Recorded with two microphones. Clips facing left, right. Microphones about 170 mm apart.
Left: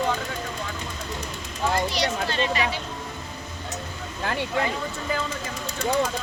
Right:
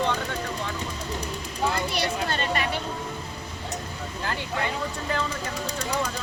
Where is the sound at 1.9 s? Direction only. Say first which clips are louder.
Left 1 dB; 50° right (ahead or behind).